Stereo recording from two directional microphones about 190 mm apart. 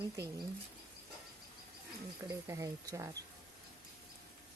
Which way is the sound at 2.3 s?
15° right (ahead or behind).